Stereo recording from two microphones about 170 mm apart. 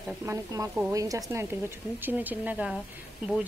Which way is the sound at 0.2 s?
20° right (ahead or behind).